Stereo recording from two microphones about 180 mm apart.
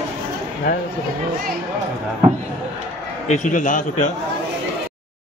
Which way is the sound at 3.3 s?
45° left (ahead or behind).